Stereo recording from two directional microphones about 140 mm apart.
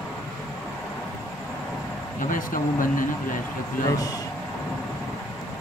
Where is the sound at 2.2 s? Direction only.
75° left (ahead or behind).